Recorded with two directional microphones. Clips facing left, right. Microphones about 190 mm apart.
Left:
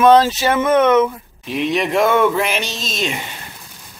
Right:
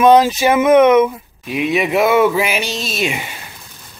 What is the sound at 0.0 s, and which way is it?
Speech, 10° right (ahead or behind).